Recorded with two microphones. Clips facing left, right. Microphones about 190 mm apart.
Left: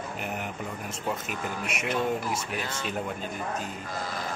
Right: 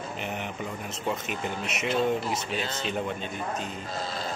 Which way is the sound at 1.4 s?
25° right (ahead or behind).